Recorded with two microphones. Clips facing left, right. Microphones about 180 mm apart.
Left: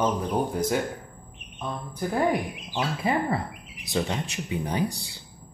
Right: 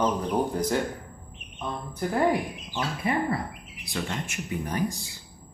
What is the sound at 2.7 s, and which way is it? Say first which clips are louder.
Speech: left 2 dB; 25° left (ahead or behind).